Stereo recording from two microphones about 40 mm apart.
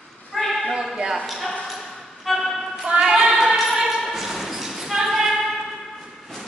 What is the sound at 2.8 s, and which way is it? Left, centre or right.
Female singing, right.